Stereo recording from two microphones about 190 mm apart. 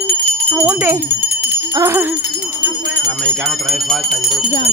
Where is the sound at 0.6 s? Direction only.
10° right (ahead or behind).